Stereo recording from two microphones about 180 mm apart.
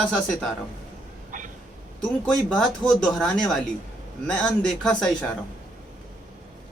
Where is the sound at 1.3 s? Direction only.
45° right (ahead or behind).